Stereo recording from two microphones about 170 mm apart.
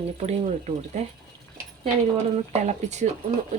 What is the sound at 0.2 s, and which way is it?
Speech, 40° right (ahead or behind).